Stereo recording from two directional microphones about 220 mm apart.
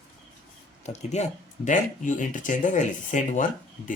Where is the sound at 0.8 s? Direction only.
30° left (ahead or behind).